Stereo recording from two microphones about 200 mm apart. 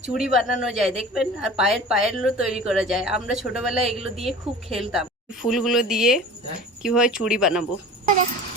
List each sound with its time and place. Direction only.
0.1 s a woman's voice: centre (ahead or behind)
3.9 s a woman's voice: 30° right (ahead or behind)
4.8 s a woman's voice: centre (ahead or behind)